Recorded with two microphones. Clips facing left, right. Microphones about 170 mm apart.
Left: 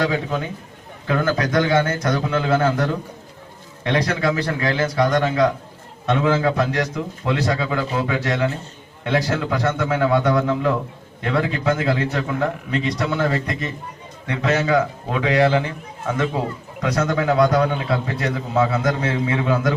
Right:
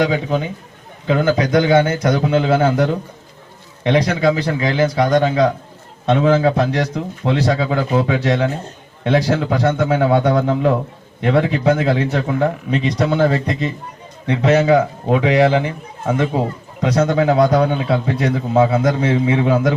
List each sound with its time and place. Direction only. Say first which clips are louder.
0.0 s a man's voice: right 4 dB; 20° right (ahead or behind)